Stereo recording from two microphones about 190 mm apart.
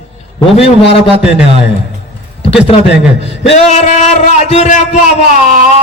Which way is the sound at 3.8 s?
35° left (ahead or behind).